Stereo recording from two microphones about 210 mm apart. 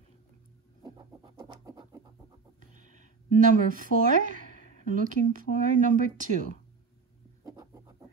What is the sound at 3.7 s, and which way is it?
Speech, 40° right (ahead or behind).